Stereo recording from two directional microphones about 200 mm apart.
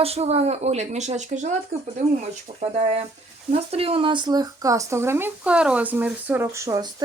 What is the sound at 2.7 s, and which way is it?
Speech, 30° right (ahead or behind).